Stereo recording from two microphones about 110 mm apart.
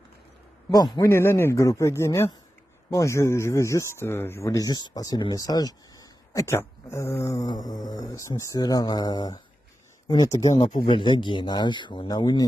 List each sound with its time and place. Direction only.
0.7 s speech: 35° left (ahead or behind)
1.0 s speech: 20° left (ahead or behind)
10.5 s speech: 50° left (ahead or behind)